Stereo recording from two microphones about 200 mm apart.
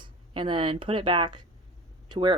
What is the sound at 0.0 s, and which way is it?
Speech, 25° right (ahead or behind).